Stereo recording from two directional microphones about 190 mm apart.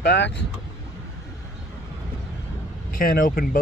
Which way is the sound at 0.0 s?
60° left (ahead or behind).